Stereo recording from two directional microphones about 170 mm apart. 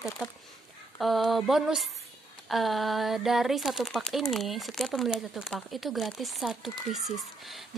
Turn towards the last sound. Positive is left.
turn(degrees=0)  # may be behind; listen again after turning